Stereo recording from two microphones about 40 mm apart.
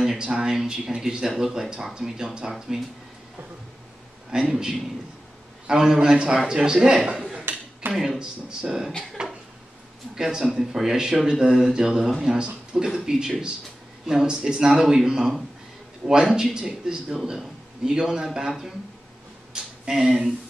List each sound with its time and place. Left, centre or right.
0.2 s a man's voice: centre
4.3 s a man's voice: centre
7.9 s a man's voice: centre
9.2 s a sound: centre
10.1 s a man's voice: centre
19.9 s a man's voice: centre